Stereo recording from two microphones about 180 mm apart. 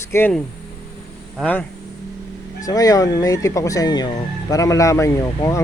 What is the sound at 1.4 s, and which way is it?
Speech, 10° left (ahead or behind).